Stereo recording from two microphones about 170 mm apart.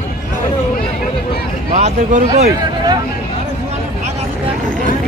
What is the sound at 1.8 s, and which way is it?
Speech, 45° right (ahead or behind).